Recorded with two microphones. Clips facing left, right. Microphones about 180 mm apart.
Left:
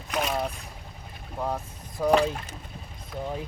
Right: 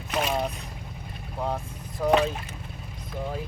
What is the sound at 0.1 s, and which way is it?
Boat, 5° right (ahead or behind).